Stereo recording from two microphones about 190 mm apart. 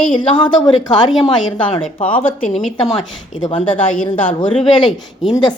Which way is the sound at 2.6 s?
Centre (ahead or behind).